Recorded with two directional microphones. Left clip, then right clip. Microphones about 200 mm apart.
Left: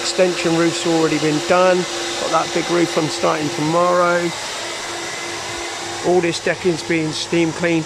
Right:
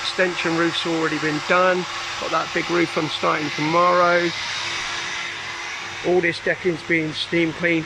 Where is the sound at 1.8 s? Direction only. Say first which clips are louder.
Left 5 dB; 55° left (ahead or behind).